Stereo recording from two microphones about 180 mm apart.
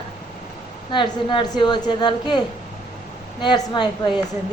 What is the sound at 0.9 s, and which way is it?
A woman's voice, 25° left (ahead or behind).